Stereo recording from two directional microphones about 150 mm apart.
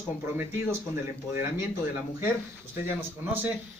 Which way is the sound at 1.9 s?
15° right (ahead or behind).